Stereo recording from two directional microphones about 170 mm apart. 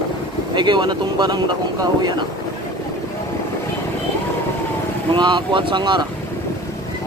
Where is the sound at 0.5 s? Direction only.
25° right (ahead or behind).